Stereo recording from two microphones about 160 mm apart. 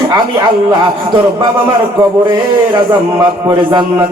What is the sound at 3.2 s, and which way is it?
Speech, 25° right (ahead or behind).